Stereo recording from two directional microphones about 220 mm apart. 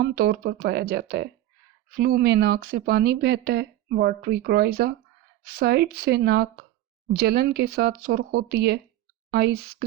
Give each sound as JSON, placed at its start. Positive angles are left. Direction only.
{"t": 0.0, "sound": "speech", "side_deg": -45}